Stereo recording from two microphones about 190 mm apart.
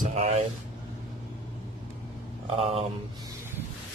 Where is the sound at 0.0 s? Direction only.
40° right (ahead or behind).